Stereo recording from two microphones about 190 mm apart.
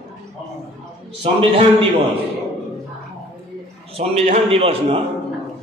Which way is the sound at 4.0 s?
35° right (ahead or behind).